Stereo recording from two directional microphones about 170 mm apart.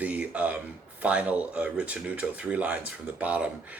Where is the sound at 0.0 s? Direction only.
10° right (ahead or behind).